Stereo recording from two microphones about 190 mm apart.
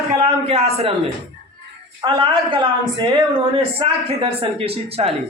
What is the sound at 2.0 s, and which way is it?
A man's voice, 25° right (ahead or behind).